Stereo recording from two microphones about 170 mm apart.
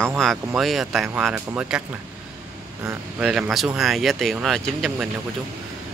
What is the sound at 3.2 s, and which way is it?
Speech, 5° right (ahead or behind).